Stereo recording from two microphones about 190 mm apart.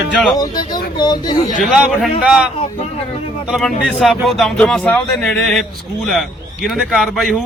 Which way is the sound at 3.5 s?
Centre (ahead or behind).